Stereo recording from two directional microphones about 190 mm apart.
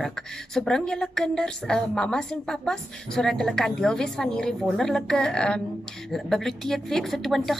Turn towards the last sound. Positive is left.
turn(degrees=0)  # may be behind; listen again after turning